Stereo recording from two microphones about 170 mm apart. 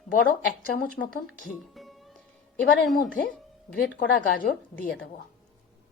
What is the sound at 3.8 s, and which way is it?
A woman's voice, 60° left (ahead or behind).